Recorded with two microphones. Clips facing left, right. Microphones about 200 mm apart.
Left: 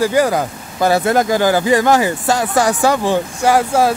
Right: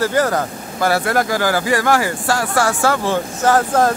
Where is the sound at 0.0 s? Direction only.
15° left (ahead or behind).